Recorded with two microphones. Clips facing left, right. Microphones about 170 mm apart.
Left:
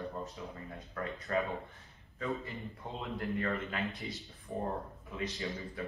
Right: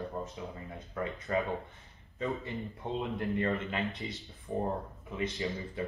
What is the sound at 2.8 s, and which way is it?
Speech, 25° right (ahead or behind).